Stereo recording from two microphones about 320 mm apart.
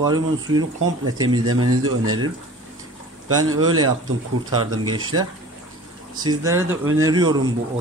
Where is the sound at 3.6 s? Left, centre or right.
Right.